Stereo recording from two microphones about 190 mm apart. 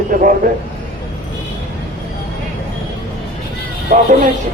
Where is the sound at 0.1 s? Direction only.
45° right (ahead or behind).